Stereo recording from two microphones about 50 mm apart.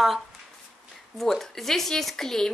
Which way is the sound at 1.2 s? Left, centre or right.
Centre.